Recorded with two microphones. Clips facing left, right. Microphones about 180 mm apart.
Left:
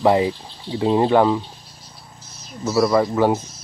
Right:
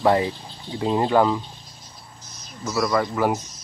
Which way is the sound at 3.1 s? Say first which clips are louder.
Left 4 dB; 25° left (ahead or behind).